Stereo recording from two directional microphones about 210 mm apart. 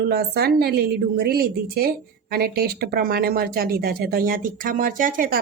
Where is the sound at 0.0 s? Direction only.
50° right (ahead or behind).